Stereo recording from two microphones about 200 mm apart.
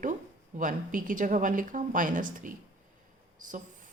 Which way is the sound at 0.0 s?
40° right (ahead or behind).